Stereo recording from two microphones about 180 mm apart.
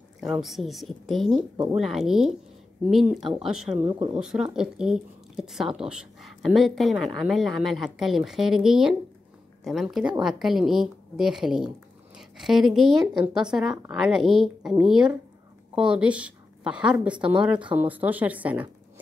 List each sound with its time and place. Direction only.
0.2 s speech: centre (ahead or behind)
3.8 s speech: 25° right (ahead or behind)
4.2 s a woman's voice: 5° right (ahead or behind)